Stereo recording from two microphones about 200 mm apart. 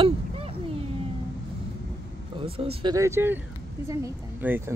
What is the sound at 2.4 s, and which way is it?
Speech, 30° right (ahead or behind).